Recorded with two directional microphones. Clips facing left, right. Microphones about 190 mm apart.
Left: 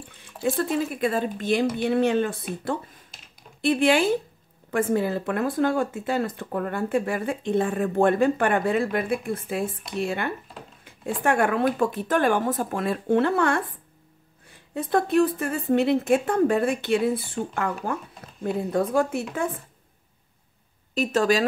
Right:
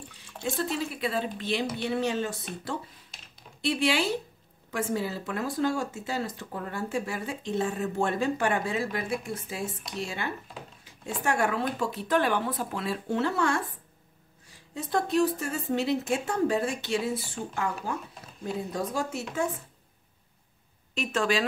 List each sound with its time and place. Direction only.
0.3 s drip: centre (ahead or behind)
0.6 s speech: 50° left (ahead or behind)
3.6 s speech: 50° left (ahead or behind)
10.8 s a sound: 55° left (ahead or behind)
11.2 s speech: 55° left (ahead or behind)
20.9 s a woman's voice: 40° left (ahead or behind)